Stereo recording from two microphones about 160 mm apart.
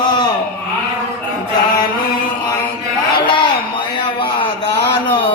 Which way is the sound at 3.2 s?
30° left (ahead or behind).